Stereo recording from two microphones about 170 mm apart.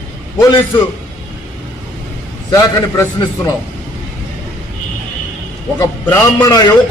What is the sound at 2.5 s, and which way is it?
A man's voice, 20° left (ahead or behind).